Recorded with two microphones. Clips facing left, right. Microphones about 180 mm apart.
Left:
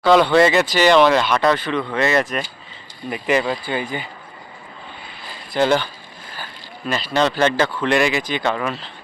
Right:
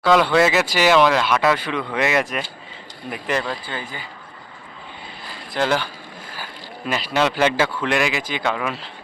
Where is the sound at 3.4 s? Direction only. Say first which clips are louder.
Left 6 dB; 15° left (ahead or behind).